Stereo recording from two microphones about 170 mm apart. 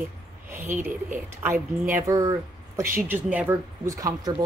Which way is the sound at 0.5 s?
15° right (ahead or behind).